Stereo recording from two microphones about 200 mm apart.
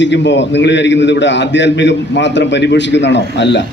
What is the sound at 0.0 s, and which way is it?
A man's voice, 60° left (ahead or behind).